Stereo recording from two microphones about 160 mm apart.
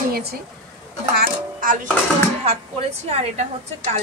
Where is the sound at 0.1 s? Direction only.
75° right (ahead or behind).